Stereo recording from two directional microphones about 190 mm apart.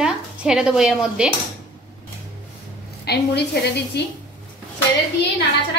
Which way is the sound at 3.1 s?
60° left (ahead or behind).